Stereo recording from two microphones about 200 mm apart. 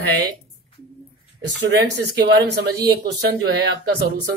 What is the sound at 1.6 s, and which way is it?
A man's voice, 60° right (ahead or behind).